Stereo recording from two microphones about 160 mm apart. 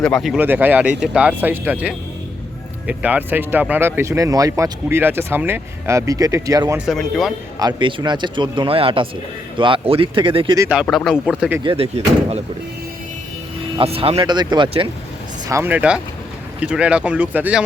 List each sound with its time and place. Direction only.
0.0 s speech: centre (ahead or behind)
0.4 s speech: 10° right (ahead or behind)
6.7 s speech: centre (ahead or behind)
7.6 s speech: 30° right (ahead or behind)
10.8 s speech: centre (ahead or behind)
11.6 s speech: 35° right (ahead or behind)
13.7 s speech: 35° right (ahead or behind)
15.4 s speech: 15° right (ahead or behind)